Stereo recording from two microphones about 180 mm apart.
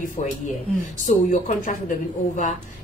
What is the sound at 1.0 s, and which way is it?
Speech, 45° left (ahead or behind).